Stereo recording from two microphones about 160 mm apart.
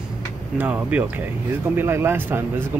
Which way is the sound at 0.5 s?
10° right (ahead or behind).